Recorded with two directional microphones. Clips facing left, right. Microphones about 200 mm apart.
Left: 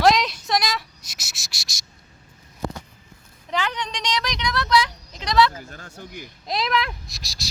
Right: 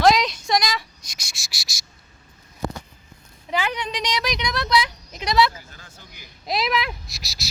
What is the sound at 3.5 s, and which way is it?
Speech, 10° right (ahead or behind).